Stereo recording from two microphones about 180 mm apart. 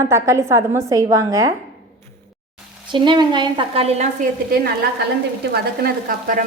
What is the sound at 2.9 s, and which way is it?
A woman's voice, 25° right (ahead or behind).